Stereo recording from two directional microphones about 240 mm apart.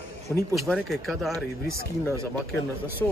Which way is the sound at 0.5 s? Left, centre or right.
Centre.